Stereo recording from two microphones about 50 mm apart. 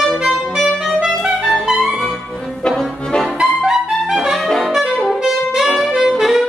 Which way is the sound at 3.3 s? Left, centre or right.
Centre.